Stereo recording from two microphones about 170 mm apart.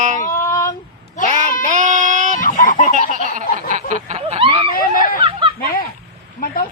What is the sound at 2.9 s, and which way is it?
Male singing, 45° right (ahead or behind).